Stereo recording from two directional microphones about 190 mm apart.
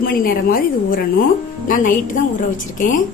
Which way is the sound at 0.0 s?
50° left (ahead or behind).